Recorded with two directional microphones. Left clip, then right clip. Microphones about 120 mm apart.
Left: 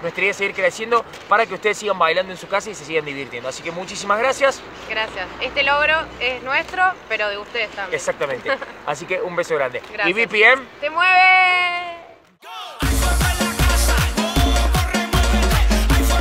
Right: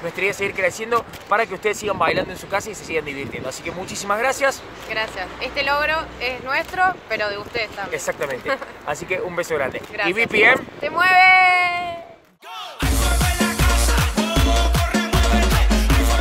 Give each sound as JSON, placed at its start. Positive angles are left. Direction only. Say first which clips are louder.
{"t": 0.1, "sound": "speech", "louder": "left 2 dB", "side_deg": 10}
{"t": 4.8, "sound": "speech", "louder": "left 1 dB", "side_deg": -30}
{"t": 7.9, "sound": "speech", "louder": "left 3 dB", "side_deg": 10}
{"t": 10.8, "sound": "speech", "louder": "right 2 dB", "side_deg": -25}
{"t": 12.8, "sound": "music", "louder": "left 1 dB", "side_deg": 0}